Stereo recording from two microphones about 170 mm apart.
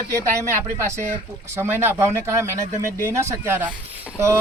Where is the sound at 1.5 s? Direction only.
15° right (ahead or behind).